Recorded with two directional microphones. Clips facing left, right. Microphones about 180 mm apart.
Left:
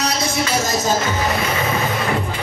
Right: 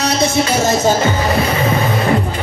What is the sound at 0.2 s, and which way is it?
Music, 25° right (ahead or behind).